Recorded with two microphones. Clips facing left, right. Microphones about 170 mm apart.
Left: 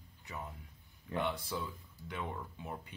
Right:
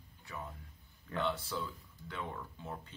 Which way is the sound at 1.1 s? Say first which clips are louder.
Even; 15° left (ahead or behind).